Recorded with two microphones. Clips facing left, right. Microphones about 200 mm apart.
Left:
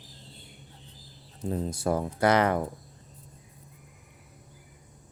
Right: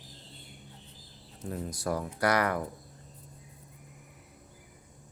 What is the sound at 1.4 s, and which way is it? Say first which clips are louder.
Speech: left 6 dB; 25° left (ahead or behind).